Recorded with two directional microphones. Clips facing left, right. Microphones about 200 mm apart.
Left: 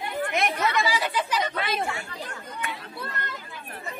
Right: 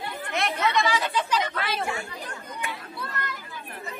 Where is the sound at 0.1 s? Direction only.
15° left (ahead or behind).